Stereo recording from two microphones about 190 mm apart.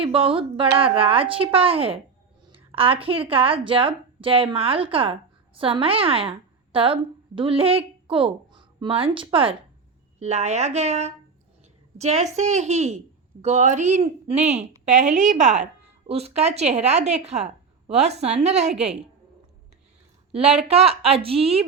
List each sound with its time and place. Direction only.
0.0 s a woman's voice: 30° right (ahead or behind)
20.3 s a woman's voice: 35° right (ahead or behind)